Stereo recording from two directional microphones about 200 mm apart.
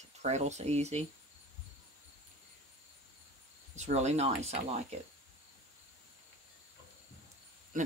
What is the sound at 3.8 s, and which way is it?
Speech, 35° right (ahead or behind).